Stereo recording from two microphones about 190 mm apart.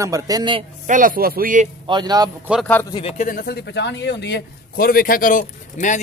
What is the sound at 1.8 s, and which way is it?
Speech, 25° right (ahead or behind).